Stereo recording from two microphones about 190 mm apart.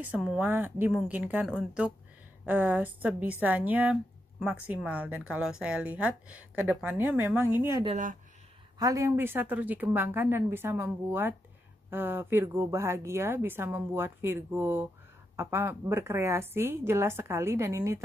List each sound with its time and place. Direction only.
0.0 s speech: 5° right (ahead or behind)
7.8 s speech: 40° right (ahead or behind)
8.7 s speech: 20° right (ahead or behind)